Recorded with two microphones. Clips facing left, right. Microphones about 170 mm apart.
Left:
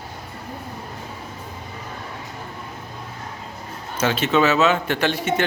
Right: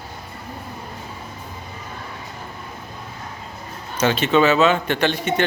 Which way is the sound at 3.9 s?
5° left (ahead or behind).